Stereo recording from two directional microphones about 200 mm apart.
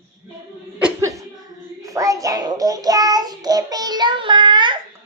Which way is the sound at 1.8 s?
15° right (ahead or behind).